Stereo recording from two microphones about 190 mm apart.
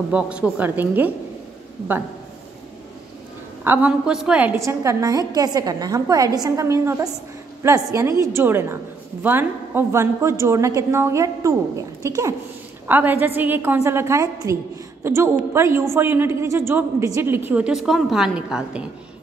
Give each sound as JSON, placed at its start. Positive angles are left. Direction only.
{"t": 0.1, "sound": "a woman's voice", "side_deg": -5}
{"t": 3.6, "sound": "a woman's voice", "side_deg": -10}